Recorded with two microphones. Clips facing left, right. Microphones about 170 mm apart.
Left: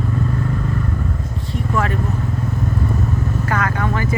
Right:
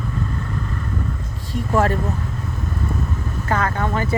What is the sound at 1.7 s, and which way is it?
Vehicle, 35° right (ahead or behind).